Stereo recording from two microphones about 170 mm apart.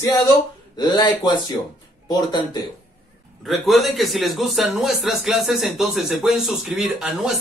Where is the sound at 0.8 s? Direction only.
25° left (ahead or behind).